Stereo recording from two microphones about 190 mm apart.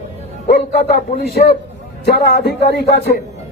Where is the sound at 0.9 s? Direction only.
50° left (ahead or behind).